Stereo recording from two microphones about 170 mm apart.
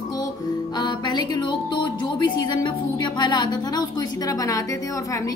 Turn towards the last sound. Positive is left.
turn(degrees=20)  # may be behind; listen again after turning